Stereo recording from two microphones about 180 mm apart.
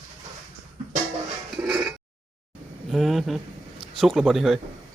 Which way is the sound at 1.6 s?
5° right (ahead or behind).